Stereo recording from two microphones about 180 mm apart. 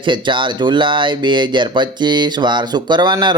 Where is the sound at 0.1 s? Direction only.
25° right (ahead or behind).